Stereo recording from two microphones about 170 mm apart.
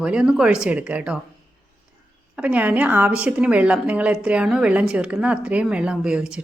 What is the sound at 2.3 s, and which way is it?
A woman's voice, 10° right (ahead or behind).